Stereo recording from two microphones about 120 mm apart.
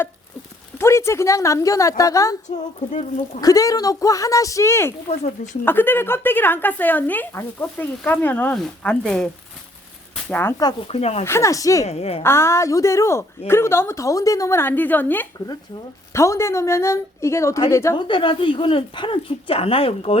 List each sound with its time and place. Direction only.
0.8 s a woman's voice: 20° left (ahead or behind)
2.9 s speech: 75° left (ahead or behind)
3.4 s a woman's voice: 30° left (ahead or behind)
10.6 s speech: 35° left (ahead or behind)
10.8 s speech: 60° left (ahead or behind)
11.3 s a woman's voice: 25° left (ahead or behind)
11.9 s speech: 60° left (ahead or behind)
12.2 s a woman's voice: 20° left (ahead or behind)
17.9 s speech: 40° left (ahead or behind)